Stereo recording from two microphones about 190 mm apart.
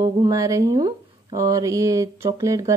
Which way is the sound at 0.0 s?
20° right (ahead or behind).